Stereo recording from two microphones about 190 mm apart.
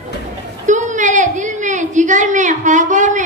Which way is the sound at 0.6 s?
40° right (ahead or behind).